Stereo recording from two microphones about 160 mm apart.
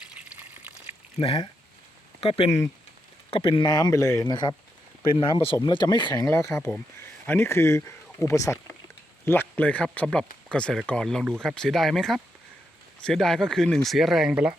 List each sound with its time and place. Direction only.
0.2 s water: 10° right (ahead or behind)
1.2 s speech: 35° left (ahead or behind); by 14.5 s 5° right (ahead or behind)